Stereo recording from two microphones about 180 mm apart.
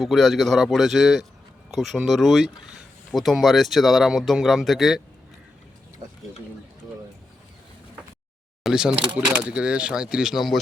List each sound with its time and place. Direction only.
0.0 s speech: centre (ahead or behind)
6.0 s speech: 25° right (ahead or behind)
8.6 s speech: 5° right (ahead or behind)